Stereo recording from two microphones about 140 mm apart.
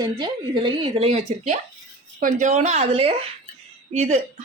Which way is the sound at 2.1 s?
65° right (ahead or behind).